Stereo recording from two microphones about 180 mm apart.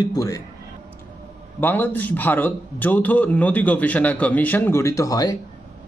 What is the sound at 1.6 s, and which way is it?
A man's voice, 10° left (ahead or behind).